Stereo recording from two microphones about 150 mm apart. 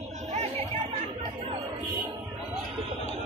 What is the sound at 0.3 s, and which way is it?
Chatter, 50° right (ahead or behind).